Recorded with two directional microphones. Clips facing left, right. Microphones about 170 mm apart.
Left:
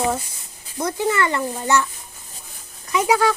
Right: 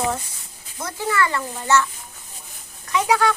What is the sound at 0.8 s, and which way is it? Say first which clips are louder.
A child's voice: left 3 dB; 20° left (ahead or behind).